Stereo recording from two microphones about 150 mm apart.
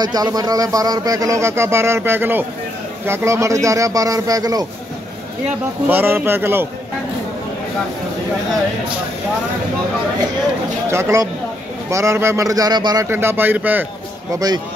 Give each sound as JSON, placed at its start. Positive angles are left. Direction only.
{"t": 0.0, "sound": "a man's voice", "side_deg": -25}
{"t": 5.9, "sound": "speech", "side_deg": -15}
{"t": 10.9, "sound": "speech", "side_deg": -20}
{"t": 14.3, "sound": "a man's voice", "side_deg": -25}